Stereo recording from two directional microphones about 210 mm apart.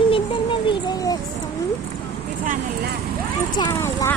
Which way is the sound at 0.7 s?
20° left (ahead or behind).